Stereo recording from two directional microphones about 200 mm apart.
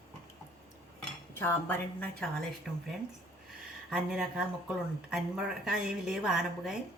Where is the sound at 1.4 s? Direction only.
10° left (ahead or behind).